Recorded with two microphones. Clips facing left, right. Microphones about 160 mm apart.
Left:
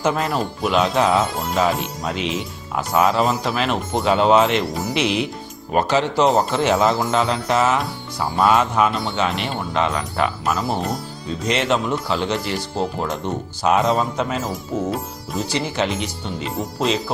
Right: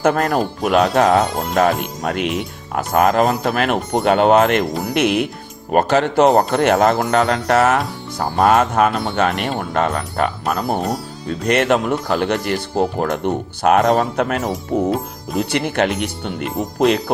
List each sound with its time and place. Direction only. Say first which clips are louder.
0.0 s speech: right 4 dB; 55° right (ahead or behind)
14.8 s music: right 5 dB; centre (ahead or behind)
15.4 s speech: right 4 dB; 60° right (ahead or behind)